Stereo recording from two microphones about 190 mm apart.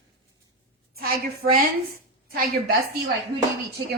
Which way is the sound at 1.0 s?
50° right (ahead or behind).